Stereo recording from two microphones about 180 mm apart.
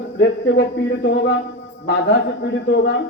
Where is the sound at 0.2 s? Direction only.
90° left.